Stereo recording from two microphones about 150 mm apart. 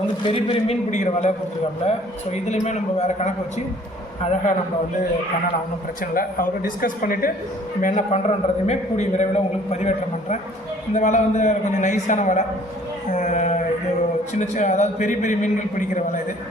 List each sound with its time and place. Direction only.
0.2 s a man's voice: 35° left (ahead or behind)
0.9 s a man's voice: 55° left (ahead or behind)
4.2 s a man's voice: 50° left (ahead or behind)
6.0 s a man's voice: 70° left (ahead or behind)
8.1 s a man's voice: 45° left (ahead or behind)
13.1 s a sound: 55° left (ahead or behind)
14.3 s a man's voice: 55° left (ahead or behind)